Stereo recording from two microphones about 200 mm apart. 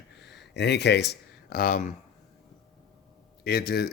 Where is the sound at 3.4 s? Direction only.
50° left (ahead or behind).